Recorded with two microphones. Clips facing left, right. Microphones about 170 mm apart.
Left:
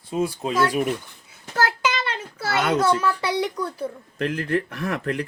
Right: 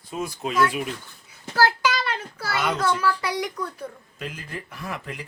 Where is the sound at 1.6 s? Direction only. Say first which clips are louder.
Right 1 dB; 20° left (ahead or behind).